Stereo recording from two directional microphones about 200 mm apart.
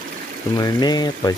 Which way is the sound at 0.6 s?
20° left (ahead or behind).